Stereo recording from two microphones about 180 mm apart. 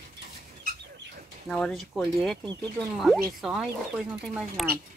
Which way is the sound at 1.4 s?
5° left (ahead or behind).